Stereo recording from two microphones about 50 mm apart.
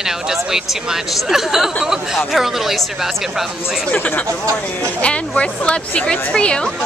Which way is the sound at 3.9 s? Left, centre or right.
Left.